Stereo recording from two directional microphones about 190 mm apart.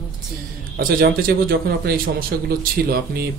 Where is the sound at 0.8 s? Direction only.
50° right (ahead or behind).